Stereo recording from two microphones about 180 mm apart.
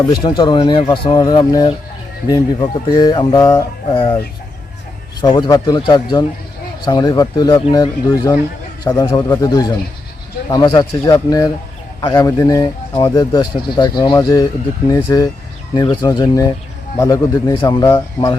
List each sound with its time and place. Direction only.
0.0 s speech: 25° left (ahead or behind)
5.2 s speech: 25° left (ahead or behind)